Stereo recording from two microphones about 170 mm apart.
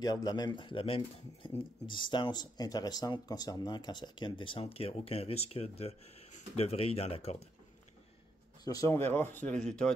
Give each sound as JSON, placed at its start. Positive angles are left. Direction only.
{"t": 0.0, "sound": "speech", "side_deg": 25}
{"t": 8.6, "sound": "speech", "side_deg": 20}